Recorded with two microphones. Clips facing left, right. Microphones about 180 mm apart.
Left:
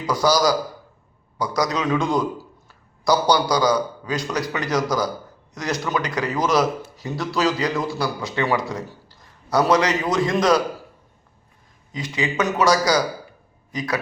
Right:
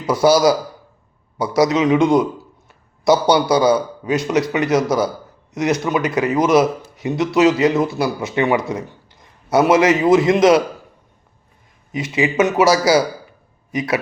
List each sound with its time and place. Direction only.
0.1 s a man's voice: 25° right (ahead or behind)
11.9 s a man's voice: 25° right (ahead or behind)
13.7 s a man's voice: 25° right (ahead or behind)